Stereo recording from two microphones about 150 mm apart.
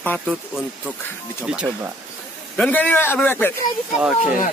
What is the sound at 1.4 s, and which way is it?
Speech, 5° right (ahead or behind).